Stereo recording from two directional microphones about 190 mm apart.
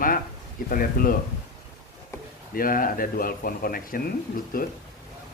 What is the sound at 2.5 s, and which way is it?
Speech, 50° left (ahead or behind).